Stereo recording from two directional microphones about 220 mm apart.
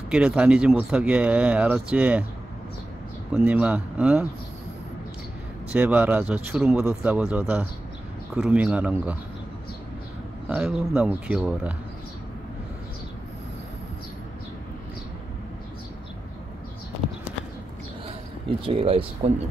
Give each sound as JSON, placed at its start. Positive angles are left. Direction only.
{"t": 0.1, "sound": "speech", "side_deg": -5}
{"t": 3.3, "sound": "speech", "side_deg": -5}
{"t": 5.7, "sound": "speech", "side_deg": -5}
{"t": 10.5, "sound": "speech", "side_deg": -5}
{"t": 18.7, "sound": "speech", "side_deg": -25}